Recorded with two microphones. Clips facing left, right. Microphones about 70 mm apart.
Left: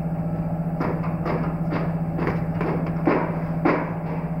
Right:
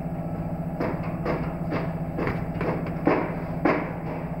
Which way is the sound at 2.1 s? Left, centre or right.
Centre.